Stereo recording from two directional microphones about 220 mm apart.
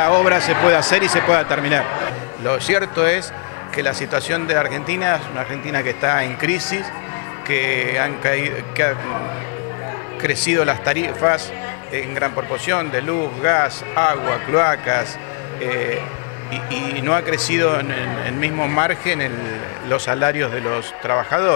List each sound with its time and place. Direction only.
0.0 s speech: 20° left (ahead or behind)
10.2 s speech: 15° left (ahead or behind)
17.0 s speech: 15° left (ahead or behind)